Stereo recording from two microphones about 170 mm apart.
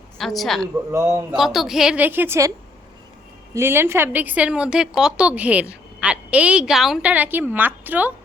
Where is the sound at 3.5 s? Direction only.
15° right (ahead or behind).